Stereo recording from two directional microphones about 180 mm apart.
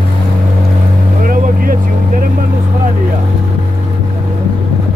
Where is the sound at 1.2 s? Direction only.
50° right (ahead or behind).